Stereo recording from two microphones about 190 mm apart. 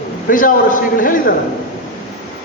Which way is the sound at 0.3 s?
45° left (ahead or behind).